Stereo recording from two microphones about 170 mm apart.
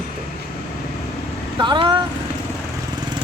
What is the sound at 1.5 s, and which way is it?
Speech, 30° right (ahead or behind).